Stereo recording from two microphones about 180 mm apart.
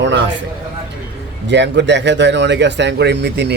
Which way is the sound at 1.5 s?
75° right (ahead or behind).